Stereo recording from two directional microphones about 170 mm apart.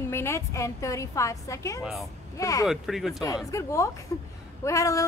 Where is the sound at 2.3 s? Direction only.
20° left (ahead or behind).